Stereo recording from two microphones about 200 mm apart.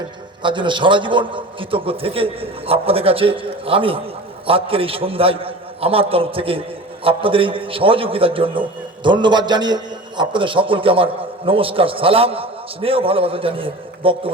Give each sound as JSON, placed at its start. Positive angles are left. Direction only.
{"t": 0.4, "sound": "a man's voice", "side_deg": -25}